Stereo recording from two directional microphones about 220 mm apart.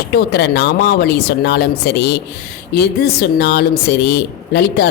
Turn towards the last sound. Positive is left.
turn(degrees=50)  # may be behind; listen again after turning